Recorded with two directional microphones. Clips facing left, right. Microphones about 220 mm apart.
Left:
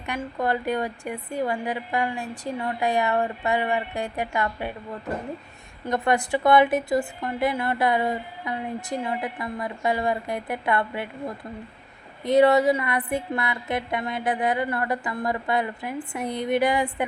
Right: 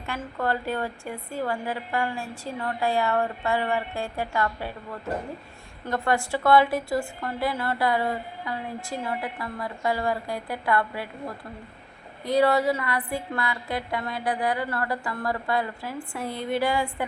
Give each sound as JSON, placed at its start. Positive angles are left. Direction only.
{"t": 0.0, "sound": "a woman's voice", "side_deg": 15}
{"t": 5.8, "sound": "a woman's voice", "side_deg": 20}
{"t": 12.2, "sound": "a woman's voice", "side_deg": 20}